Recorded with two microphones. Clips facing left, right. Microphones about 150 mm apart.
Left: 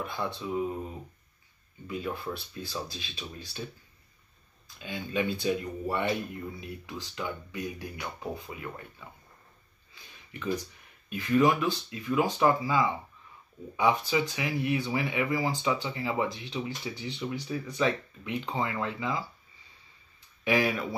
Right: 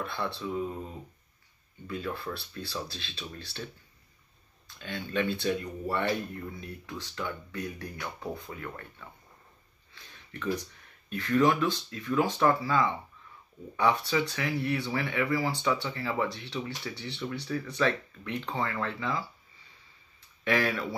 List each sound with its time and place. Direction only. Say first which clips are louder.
0.0 s speech: even; 15° left (ahead or behind)
1.9 s speech: left 1 dB; 15° left (ahead or behind)
4.7 s speech: even; 10° left (ahead or behind)
10.3 s speech: even; 15° left (ahead or behind)
20.4 s speech: left 1 dB; 15° left (ahead or behind)